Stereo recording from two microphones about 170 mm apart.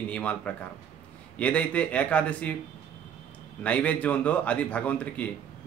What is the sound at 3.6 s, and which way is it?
Speech, 5° left (ahead or behind).